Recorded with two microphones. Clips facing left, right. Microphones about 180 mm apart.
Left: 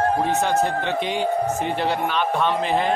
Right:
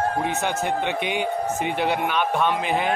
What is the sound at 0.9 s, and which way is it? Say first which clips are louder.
Speech: left 2 dB; 60° right (ahead or behind).